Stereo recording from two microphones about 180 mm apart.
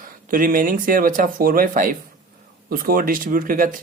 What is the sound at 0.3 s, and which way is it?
Speech, 50° right (ahead or behind).